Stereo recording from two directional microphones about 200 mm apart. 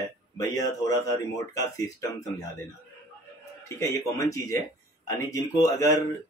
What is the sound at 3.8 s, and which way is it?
Speech, 15° left (ahead or behind).